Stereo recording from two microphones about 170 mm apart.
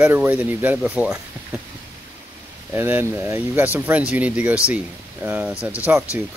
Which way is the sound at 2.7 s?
15° right (ahead or behind).